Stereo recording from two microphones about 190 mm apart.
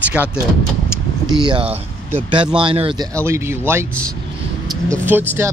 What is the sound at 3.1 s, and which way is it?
Speech, 15° right (ahead or behind).